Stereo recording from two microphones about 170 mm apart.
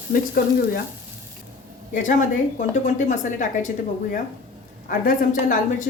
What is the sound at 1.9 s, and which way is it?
Speech, 50° left (ahead or behind).